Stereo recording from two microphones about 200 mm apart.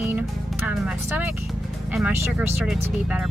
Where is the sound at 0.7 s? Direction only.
5° right (ahead or behind).